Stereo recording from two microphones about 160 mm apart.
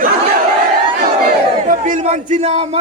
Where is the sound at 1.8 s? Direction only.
45° right (ahead or behind).